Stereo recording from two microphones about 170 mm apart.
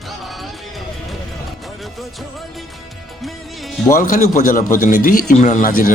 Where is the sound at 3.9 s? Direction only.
50° left (ahead or behind).